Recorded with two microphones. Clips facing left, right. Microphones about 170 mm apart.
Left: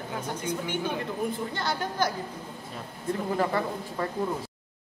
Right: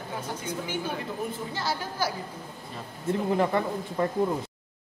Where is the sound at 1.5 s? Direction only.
5° right (ahead or behind).